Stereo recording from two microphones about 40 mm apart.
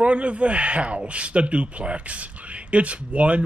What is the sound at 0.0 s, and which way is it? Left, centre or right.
Speech, right.